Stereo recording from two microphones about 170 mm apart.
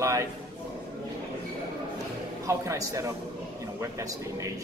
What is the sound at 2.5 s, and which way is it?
A man's voice, 20° right (ahead or behind).